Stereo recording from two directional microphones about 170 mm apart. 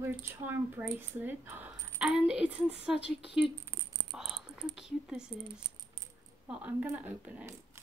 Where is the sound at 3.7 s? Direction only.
15° right (ahead or behind).